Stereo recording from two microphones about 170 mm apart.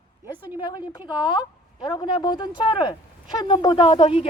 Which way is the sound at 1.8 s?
30° left (ahead or behind).